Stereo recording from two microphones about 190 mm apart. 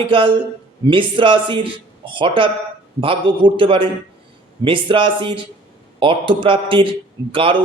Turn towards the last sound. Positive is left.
turn(degrees=-30)  # may be behind; listen again after turning